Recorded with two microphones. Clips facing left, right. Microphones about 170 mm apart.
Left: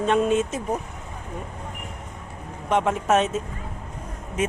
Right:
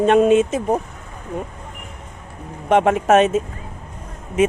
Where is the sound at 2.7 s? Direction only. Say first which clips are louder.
Right 6 dB; 80° right.